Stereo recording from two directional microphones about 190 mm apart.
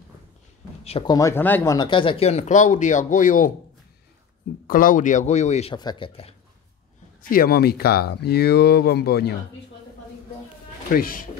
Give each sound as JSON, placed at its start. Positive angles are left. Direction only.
{"t": 0.8, "sound": "speech", "side_deg": 30}
{"t": 1.1, "sound": "speech", "side_deg": 15}
{"t": 4.6, "sound": "speech", "side_deg": 45}
{"t": 5.8, "sound": "speech", "side_deg": 25}
{"t": 7.2, "sound": "speech", "side_deg": 50}
{"t": 10.9, "sound": "speech", "side_deg": 50}